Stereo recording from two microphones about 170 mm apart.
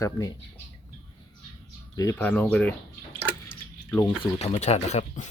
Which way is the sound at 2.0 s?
15° left (ahead or behind).